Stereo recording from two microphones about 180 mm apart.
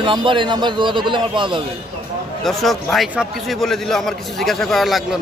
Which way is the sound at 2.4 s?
Centre (ahead or behind).